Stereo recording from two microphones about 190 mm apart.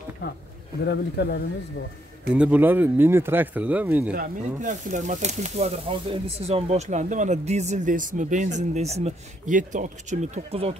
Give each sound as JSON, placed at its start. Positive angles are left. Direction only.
{"t": 0.2, "sound": "speech", "side_deg": 60}
{"t": 2.3, "sound": "speech", "side_deg": -5}
{"t": 4.1, "sound": "speech", "side_deg": -45}